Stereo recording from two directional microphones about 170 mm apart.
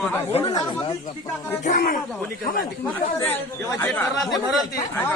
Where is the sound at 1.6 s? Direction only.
50° left (ahead or behind).